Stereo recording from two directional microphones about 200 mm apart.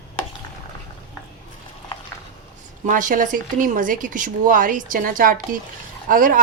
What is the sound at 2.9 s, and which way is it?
A woman's voice, 40° right (ahead or behind).